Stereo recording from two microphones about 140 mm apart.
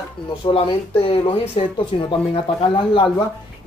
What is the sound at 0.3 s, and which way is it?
Speech, 40° left (ahead or behind).